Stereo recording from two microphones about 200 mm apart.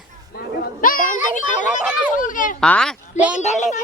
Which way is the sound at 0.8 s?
45° left (ahead or behind).